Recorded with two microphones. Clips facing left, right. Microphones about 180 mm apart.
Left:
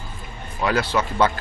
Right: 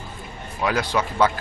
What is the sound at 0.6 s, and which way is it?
Speech, 10° right (ahead or behind).